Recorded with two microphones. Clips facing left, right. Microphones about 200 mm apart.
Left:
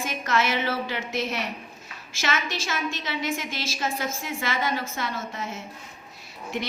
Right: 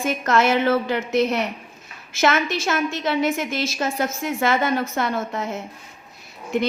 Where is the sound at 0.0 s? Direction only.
50° right (ahead or behind).